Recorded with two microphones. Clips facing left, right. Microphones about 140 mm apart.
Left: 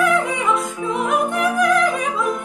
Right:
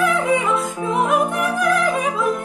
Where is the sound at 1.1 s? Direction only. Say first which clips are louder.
Even; centre (ahead or behind).